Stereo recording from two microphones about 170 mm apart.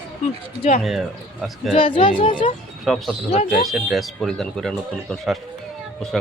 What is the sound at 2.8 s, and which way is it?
Speech, centre (ahead or behind).